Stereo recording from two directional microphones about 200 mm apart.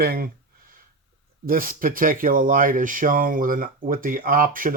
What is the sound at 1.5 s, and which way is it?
Speech, 45° right (ahead or behind).